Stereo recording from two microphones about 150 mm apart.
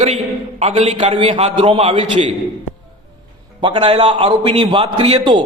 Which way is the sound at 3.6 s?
35° right (ahead or behind).